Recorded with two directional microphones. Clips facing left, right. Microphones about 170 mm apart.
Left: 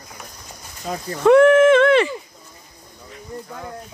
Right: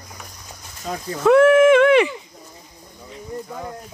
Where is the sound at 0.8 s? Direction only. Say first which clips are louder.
Left 2 dB; centre (ahead or behind).